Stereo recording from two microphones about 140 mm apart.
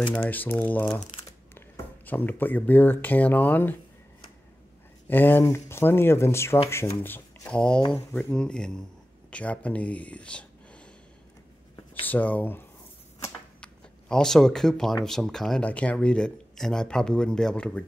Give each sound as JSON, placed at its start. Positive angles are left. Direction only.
{"t": 0.1, "sound": "speech", "side_deg": 10}
{"t": 2.0, "sound": "speech", "side_deg": 15}
{"t": 5.0, "sound": "speech", "side_deg": 15}
{"t": 12.1, "sound": "speech", "side_deg": 10}
{"t": 13.6, "sound": "a sound", "side_deg": 5}
{"t": 15.0, "sound": "speech", "side_deg": 5}